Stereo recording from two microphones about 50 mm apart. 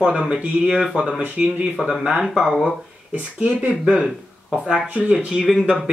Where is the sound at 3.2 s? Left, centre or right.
Right.